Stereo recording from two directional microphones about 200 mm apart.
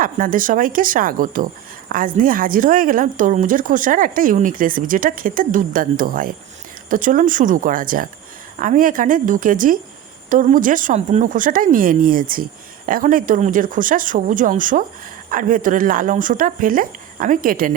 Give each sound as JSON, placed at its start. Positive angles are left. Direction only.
{"t": 0.0, "sound": "speech", "side_deg": -45}